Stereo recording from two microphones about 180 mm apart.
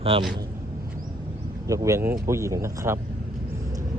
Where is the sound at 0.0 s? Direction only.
30° right (ahead or behind).